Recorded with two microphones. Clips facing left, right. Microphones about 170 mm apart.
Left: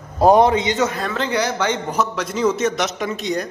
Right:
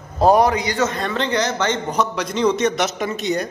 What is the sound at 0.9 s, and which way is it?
A man's voice, 5° left (ahead or behind).